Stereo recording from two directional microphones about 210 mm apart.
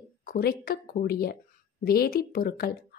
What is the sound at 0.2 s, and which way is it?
A woman's voice, 45° left (ahead or behind).